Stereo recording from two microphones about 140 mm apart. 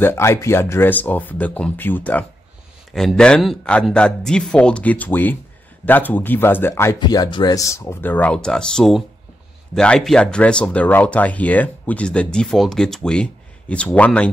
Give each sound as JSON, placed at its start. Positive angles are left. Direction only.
{"t": 0.0, "sound": "speech", "side_deg": 20}
{"t": 2.9, "sound": "speech", "side_deg": 0}
{"t": 7.0, "sound": "speech", "side_deg": 30}